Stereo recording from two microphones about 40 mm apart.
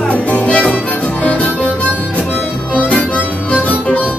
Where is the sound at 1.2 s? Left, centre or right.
Left.